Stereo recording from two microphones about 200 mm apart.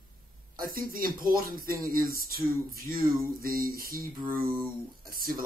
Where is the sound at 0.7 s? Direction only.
45° right (ahead or behind).